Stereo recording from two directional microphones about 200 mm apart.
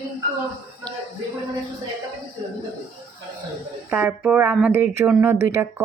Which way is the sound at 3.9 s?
5° right (ahead or behind).